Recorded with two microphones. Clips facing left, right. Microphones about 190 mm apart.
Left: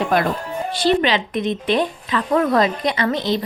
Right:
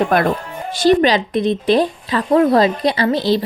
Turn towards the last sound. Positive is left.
turn(degrees=-30)  # may be behind; listen again after turning